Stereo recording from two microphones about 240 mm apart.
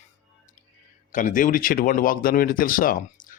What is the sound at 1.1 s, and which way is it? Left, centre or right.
Speech, left.